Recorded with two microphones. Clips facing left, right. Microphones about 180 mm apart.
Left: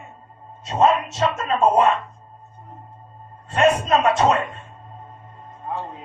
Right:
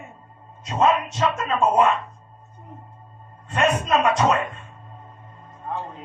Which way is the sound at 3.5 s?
30° left (ahead or behind).